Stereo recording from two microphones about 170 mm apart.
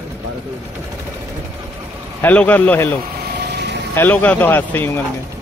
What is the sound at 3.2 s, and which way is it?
Vehicle, 75° right (ahead or behind).